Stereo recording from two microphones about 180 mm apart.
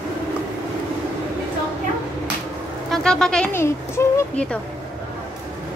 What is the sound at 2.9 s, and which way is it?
Speech, 5° left (ahead or behind).